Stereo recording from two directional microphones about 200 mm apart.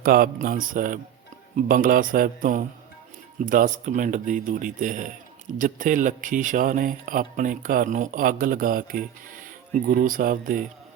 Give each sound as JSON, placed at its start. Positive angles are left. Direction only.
{"t": 0.0, "sound": "a man's voice", "side_deg": -45}